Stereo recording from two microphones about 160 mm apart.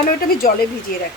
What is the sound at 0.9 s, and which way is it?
Speech, 65° left (ahead or behind).